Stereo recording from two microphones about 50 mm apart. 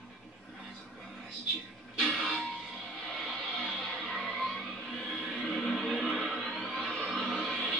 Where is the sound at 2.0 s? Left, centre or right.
Centre.